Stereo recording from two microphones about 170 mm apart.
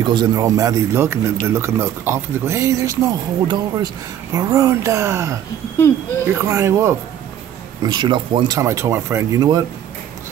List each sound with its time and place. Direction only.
0.0 s a man's voice: 25° right (ahead or behind)
8.5 s speech: 15° right (ahead or behind)